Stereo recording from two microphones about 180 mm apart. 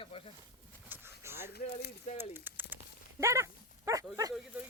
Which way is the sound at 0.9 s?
10° right (ahead or behind).